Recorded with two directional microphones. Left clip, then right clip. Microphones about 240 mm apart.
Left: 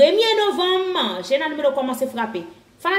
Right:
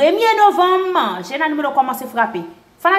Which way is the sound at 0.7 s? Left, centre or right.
Centre.